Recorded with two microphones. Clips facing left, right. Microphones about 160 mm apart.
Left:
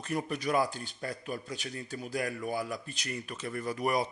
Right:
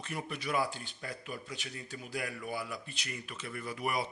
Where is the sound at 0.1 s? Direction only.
40° left (ahead or behind).